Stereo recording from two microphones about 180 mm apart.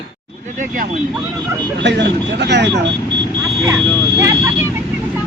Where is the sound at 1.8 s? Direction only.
75° right (ahead or behind).